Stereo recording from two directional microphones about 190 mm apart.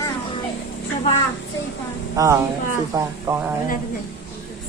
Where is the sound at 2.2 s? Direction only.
20° right (ahead or behind).